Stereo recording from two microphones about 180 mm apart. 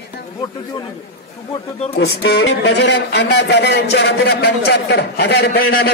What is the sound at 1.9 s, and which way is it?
A man's voice, 65° left (ahead or behind).